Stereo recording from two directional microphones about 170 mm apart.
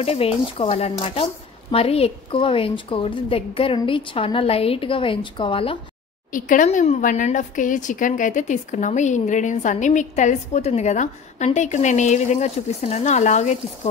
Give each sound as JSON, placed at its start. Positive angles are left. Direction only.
{"t": 0.0, "sound": "speech", "side_deg": 35}
{"t": 6.3, "sound": "speech", "side_deg": 50}